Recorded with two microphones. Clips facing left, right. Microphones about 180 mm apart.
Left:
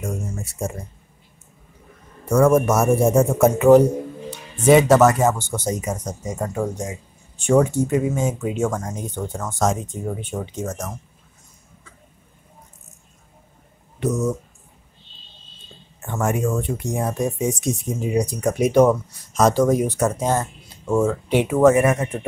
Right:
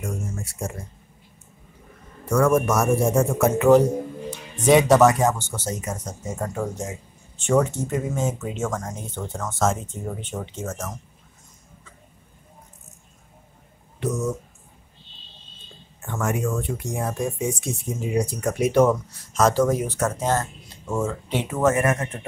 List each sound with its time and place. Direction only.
0.0 s a man's voice: 20° left (ahead or behind)
2.2 s a man's voice: 20° left (ahead or behind)
4.6 s speech: centre (ahead or behind)
5.4 s speech: 15° left (ahead or behind)
16.2 s speech: 25° left (ahead or behind)